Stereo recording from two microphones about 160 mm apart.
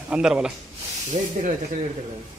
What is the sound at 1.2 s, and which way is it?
Speech, 40° right (ahead or behind).